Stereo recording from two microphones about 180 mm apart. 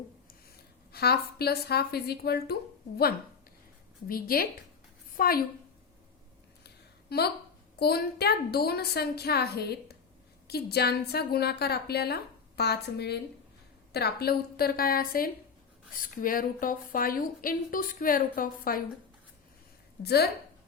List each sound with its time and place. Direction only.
0.9 s a woman's voice: 60° left (ahead or behind)
4.1 s a woman's voice: 55° left (ahead or behind)
7.1 s a woman's voice: 60° left (ahead or behind)
20.0 s a woman's voice: 65° left (ahead or behind)